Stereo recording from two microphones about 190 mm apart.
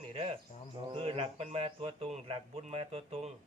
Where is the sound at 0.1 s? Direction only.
30° right (ahead or behind).